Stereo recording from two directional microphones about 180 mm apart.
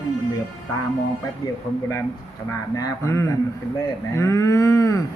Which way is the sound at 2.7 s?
15° left (ahead or behind).